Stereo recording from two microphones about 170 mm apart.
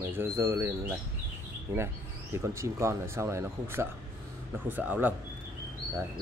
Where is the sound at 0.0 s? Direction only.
15° right (ahead or behind).